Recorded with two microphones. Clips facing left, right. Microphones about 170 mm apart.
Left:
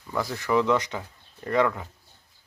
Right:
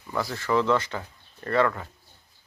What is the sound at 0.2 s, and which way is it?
Speech, 15° left (ahead or behind).